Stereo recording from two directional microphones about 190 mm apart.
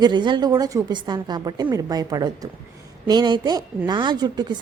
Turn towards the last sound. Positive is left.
turn(degrees=-20)  # may be behind; listen again after turning